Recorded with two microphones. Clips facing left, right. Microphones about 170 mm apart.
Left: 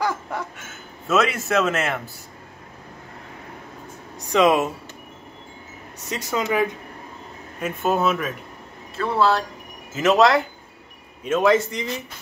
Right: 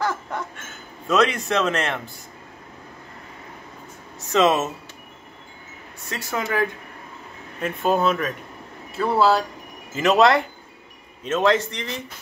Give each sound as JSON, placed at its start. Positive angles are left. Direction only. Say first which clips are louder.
{"t": 0.0, "sound": "a sound", "louder": "left 1 dB", "side_deg": 10}
{"t": 4.3, "sound": "a man's voice", "louder": "left 1 dB", "side_deg": 10}
{"t": 6.0, "sound": "speech", "louder": "left 3 dB", "side_deg": 20}
{"t": 7.6, "sound": "a man's voice", "louder": "right 1 dB", "side_deg": 0}